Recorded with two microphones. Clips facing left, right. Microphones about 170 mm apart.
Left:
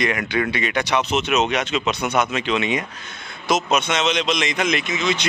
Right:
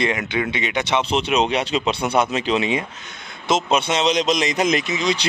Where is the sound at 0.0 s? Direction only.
25° right (ahead or behind).